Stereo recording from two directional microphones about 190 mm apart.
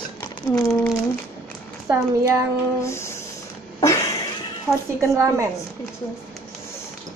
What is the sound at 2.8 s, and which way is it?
Music, 15° left (ahead or behind).